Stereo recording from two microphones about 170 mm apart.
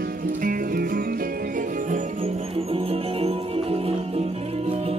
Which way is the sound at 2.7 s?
35° right (ahead or behind).